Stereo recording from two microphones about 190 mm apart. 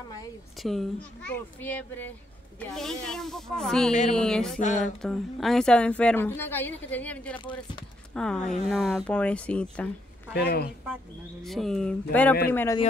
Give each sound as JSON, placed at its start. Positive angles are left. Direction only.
{"t": 0.6, "sound": "a woman's voice", "side_deg": 0}
{"t": 4.6, "sound": "music", "side_deg": 40}
{"t": 5.0, "sound": "a woman's voice", "side_deg": 0}
{"t": 10.3, "sound": "speech", "side_deg": 55}
{"t": 11.4, "sound": "a woman's voice", "side_deg": 0}